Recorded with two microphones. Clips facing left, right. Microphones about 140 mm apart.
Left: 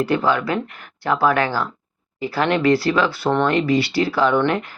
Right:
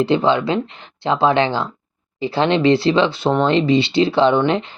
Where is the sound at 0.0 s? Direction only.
25° right (ahead or behind).